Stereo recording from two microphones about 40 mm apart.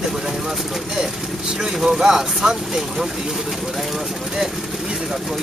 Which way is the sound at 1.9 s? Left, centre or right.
Right.